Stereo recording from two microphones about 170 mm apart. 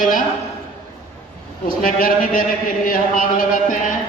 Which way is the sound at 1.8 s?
55° left (ahead or behind).